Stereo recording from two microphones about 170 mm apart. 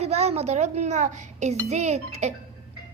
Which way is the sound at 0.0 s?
40° right (ahead or behind).